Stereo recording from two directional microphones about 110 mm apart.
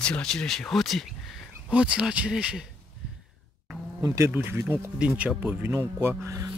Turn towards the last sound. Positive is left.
turn(degrees=-30)  # may be behind; listen again after turning